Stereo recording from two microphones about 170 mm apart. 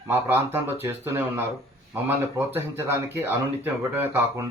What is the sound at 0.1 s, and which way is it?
Speech, 10° right (ahead or behind).